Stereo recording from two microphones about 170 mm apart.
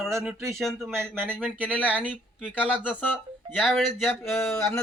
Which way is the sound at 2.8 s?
10° left (ahead or behind).